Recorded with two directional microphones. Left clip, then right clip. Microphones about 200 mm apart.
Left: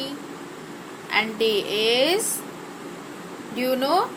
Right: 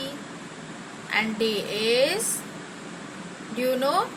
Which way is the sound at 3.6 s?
20° left (ahead or behind).